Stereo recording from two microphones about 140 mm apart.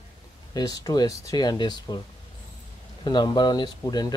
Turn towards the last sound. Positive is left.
turn(degrees=30)  # may be behind; listen again after turning